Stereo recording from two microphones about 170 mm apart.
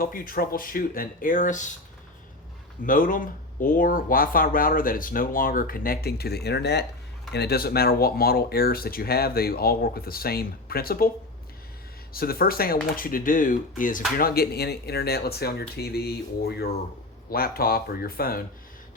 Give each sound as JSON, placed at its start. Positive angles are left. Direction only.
{"t": 0.0, "sound": "speech", "side_deg": 55}
{"t": 2.8, "sound": "speech", "side_deg": 50}
{"t": 7.3, "sound": "speech", "side_deg": 70}
{"t": 12.1, "sound": "speech", "side_deg": 60}
{"t": 14.2, "sound": "speech", "side_deg": 65}
{"t": 17.2, "sound": "speech", "side_deg": 60}